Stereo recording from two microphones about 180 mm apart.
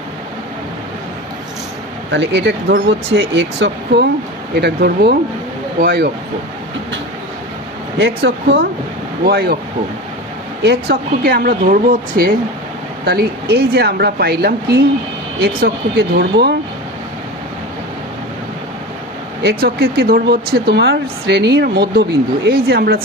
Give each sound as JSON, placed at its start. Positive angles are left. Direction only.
{"t": 2.1, "sound": "speech", "side_deg": -70}
{"t": 7.9, "sound": "speech", "side_deg": -70}
{"t": 10.6, "sound": "speech", "side_deg": -65}
{"t": 19.4, "sound": "speech", "side_deg": -65}